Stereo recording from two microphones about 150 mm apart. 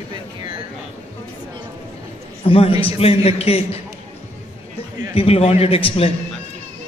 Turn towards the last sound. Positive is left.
turn(degrees=40)  # may be behind; listen again after turning